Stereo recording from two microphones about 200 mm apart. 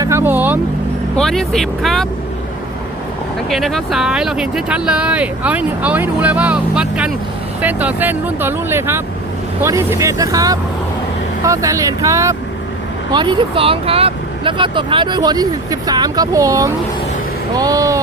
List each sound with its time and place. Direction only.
0.0 s vehicle: 10° right (ahead or behind)
1.1 s speech: centre (ahead or behind)
3.5 s speech: centre (ahead or behind); by 18.0 s 15° right (ahead or behind)